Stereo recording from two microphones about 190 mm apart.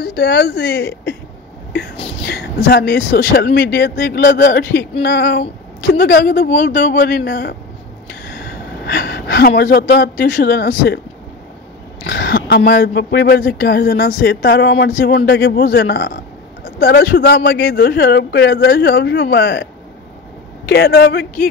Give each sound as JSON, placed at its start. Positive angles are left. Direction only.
{"t": 0.0, "sound": "speech", "side_deg": 55}
{"t": 2.2, "sound": "speech", "side_deg": 60}
{"t": 6.9, "sound": "speech", "side_deg": 55}
{"t": 12.1, "sound": "speech", "side_deg": 65}